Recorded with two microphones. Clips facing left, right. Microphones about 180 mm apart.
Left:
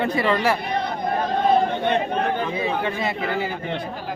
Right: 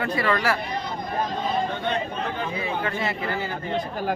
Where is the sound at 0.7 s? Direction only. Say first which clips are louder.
Left 5 dB; 60° left (ahead or behind).